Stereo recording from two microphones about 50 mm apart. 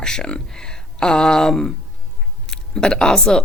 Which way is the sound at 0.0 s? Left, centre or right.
Centre.